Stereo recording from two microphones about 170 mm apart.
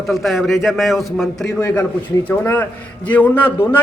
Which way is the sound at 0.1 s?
Centre (ahead or behind).